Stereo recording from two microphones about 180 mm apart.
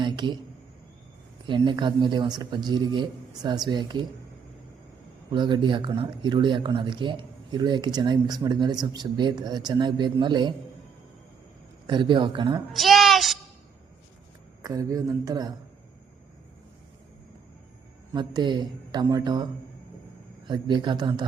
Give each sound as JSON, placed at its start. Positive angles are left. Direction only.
{"t": 0.0, "sound": "a sound", "side_deg": -25}
{"t": 1.5, "sound": "speech", "side_deg": -25}
{"t": 5.3, "sound": "speech", "side_deg": -25}
{"t": 11.9, "sound": "speech", "side_deg": -25}
{"t": 12.7, "sound": "a sound", "side_deg": 0}
{"t": 14.6, "sound": "speech", "side_deg": -20}
{"t": 18.1, "sound": "speech", "side_deg": -25}
{"t": 20.5, "sound": "speech", "side_deg": -25}